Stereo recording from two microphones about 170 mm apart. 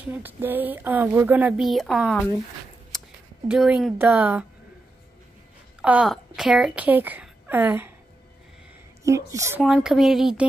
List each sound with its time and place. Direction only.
0.0 s speech: 10° right (ahead or behind)
1.7 s a woman's voice: centre (ahead or behind)
3.4 s a woman's voice: 5° right (ahead or behind)
5.8 s a woman's voice: 5° right (ahead or behind)
9.0 s speech: 15° right (ahead or behind)
9.6 s a woman's voice: 5° right (ahead or behind)